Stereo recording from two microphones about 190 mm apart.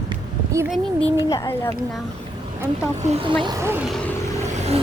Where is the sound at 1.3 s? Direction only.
15° left (ahead or behind).